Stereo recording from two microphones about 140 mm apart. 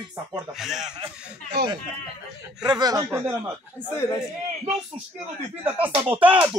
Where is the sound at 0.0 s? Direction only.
35° right (ahead or behind).